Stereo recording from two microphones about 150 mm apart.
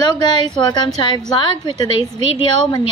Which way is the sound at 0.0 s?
30° left (ahead or behind).